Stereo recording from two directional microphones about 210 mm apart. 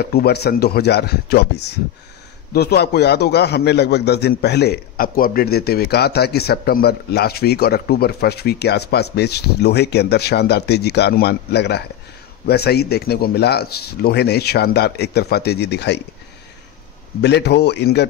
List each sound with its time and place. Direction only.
0.0 s a man's voice: 50° left (ahead or behind)
17.2 s a man's voice: 55° left (ahead or behind)